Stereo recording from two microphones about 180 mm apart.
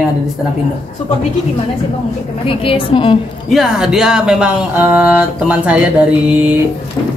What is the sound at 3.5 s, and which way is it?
Speech, 5° right (ahead or behind).